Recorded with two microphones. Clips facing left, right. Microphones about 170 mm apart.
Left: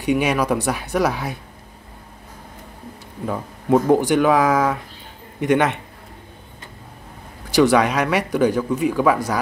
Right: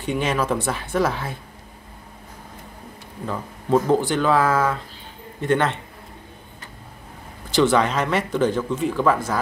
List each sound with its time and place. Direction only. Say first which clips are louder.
0.0 s speech: left 4 dB; 15° left (ahead or behind)
3.3 s speech: left 3 dB; 15° left (ahead or behind)
7.5 s speech: left 3 dB; 10° left (ahead or behind)